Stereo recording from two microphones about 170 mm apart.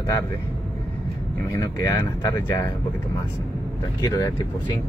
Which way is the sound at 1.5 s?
20° left (ahead or behind).